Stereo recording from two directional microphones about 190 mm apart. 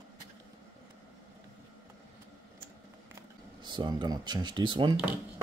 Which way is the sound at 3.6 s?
20° right (ahead or behind).